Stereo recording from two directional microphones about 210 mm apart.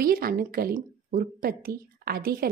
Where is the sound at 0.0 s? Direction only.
45° right (ahead or behind).